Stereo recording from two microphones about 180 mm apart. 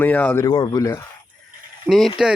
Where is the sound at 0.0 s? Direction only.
10° left (ahead or behind).